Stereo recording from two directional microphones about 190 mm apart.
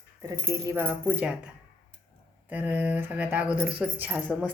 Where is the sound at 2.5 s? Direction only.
10° right (ahead or behind).